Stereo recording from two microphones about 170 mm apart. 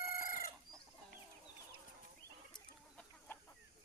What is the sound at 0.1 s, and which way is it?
Chicken, 55° left (ahead or behind).